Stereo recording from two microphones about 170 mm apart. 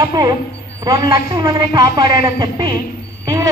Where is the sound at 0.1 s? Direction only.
20° right (ahead or behind).